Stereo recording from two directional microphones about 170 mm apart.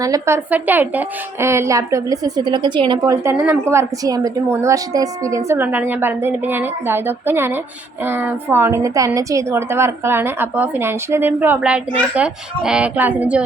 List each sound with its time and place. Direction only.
0.0 s a woman's voice: 20° right (ahead or behind)